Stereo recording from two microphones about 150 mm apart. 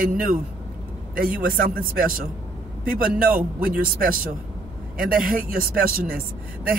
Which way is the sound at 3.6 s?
70° right (ahead or behind).